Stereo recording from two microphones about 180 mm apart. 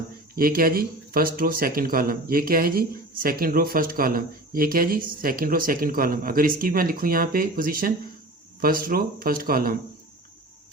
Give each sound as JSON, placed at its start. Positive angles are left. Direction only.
{"t": 0.3, "sound": "speech", "side_deg": -55}